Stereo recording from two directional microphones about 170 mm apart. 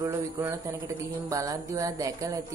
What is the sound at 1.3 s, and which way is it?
Speech, 20° right (ahead or behind).